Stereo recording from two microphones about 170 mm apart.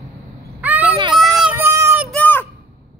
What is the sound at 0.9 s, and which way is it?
Children playing, 30° right (ahead or behind).